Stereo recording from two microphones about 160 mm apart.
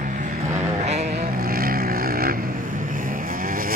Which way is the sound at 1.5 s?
65° right (ahead or behind).